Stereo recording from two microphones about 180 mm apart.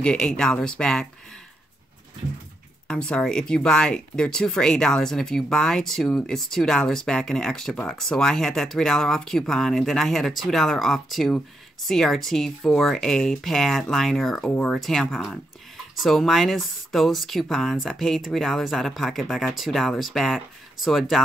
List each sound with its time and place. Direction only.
0.0 s speech: 5° left (ahead or behind)
2.9 s speech: 5° left (ahead or behind)